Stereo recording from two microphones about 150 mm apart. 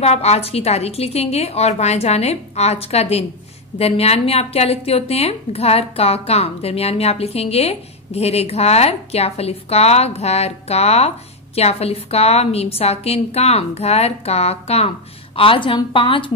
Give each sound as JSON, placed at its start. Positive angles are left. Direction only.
{"t": 0.0, "sound": "a woman's voice", "side_deg": 45}